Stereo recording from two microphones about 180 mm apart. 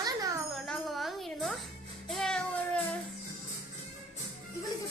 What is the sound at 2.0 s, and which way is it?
Child singing, 5° left (ahead or behind).